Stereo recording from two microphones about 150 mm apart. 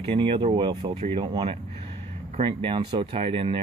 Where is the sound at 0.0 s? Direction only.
35° right (ahead or behind).